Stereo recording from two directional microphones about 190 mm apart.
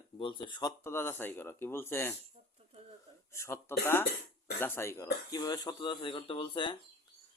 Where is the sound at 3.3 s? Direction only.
15° left (ahead or behind).